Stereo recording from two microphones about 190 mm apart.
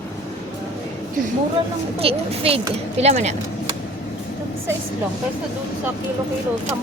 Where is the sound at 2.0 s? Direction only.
30° right (ahead or behind).